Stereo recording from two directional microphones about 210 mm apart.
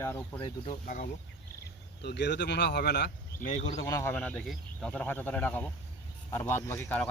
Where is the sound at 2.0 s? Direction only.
55° left (ahead or behind).